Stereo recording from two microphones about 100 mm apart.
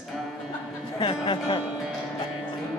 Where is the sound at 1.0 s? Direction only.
60° left (ahead or behind).